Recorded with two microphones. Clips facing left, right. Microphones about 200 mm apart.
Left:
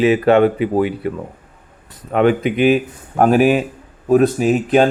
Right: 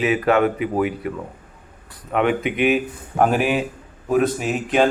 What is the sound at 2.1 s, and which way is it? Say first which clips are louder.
Speech: left 5 dB; 35° left (ahead or behind).